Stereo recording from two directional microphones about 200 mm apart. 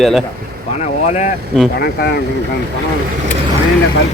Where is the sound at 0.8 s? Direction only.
35° left (ahead or behind).